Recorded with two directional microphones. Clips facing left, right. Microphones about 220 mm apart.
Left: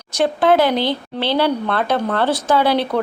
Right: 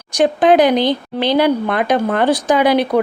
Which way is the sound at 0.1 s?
15° right (ahead or behind).